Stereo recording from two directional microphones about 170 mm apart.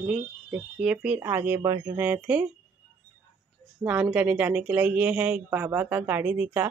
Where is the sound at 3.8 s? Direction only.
10° right (ahead or behind).